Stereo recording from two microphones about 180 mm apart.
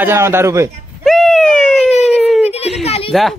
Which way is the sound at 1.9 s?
40° left (ahead or behind).